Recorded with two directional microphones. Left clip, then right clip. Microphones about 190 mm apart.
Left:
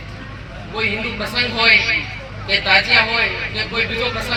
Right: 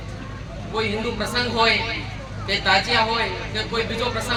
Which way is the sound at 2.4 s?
10° left (ahead or behind).